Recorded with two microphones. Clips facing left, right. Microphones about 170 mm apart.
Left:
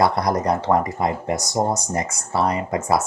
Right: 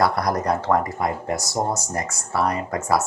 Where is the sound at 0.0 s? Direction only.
20° left (ahead or behind).